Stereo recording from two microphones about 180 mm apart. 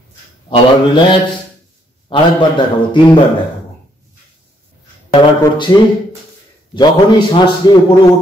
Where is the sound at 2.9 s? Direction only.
25° left (ahead or behind).